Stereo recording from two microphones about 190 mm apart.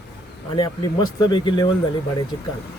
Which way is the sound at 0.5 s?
20° left (ahead or behind).